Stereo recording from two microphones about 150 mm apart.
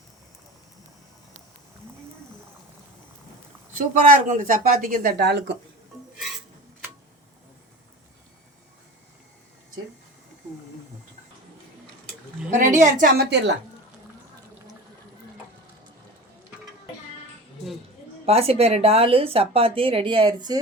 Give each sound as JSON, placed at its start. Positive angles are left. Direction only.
{"t": 3.8, "sound": "speech", "side_deg": -55}
{"t": 12.5, "sound": "a woman's voice", "side_deg": -55}
{"t": 18.3, "sound": "speech", "side_deg": -40}